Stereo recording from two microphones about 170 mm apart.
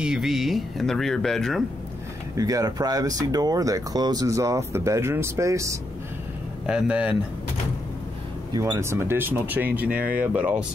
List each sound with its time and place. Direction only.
0.0 s speech: 5° right (ahead or behind)
2.3 s speech: 20° right (ahead or behind)
6.6 s speech: 5° right (ahead or behind)
8.5 s speech: 15° right (ahead or behind)